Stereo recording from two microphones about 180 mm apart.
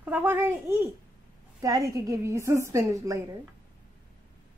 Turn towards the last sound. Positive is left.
turn(degrees=-15)  # may be behind; listen again after turning